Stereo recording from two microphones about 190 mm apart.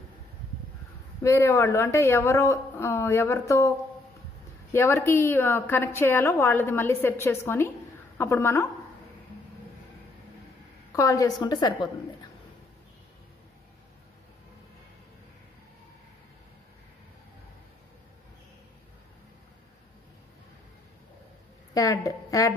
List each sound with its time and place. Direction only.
1.2 s a woman's voice: 15° left (ahead or behind)
4.7 s a woman's voice: 15° left (ahead or behind)
10.9 s a woman's voice: 15° left (ahead or behind)
21.7 s a woman's voice: 15° left (ahead or behind)